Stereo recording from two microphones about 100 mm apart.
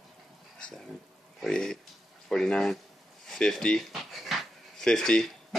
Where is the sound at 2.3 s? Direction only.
5° left (ahead or behind).